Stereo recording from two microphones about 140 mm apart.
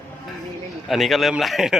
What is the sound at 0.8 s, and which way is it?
Speech, centre (ahead or behind).